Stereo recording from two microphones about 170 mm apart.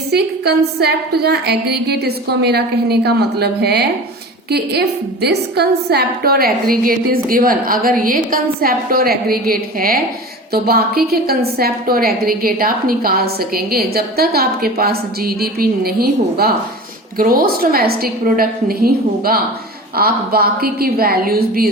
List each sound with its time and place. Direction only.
0.1 s a woman's voice: 70° right (ahead or behind)